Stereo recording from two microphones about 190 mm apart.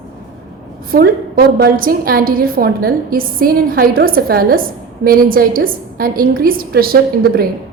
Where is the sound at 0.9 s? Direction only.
50° right (ahead or behind).